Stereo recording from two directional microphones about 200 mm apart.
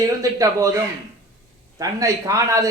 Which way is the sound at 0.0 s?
15° right (ahead or behind).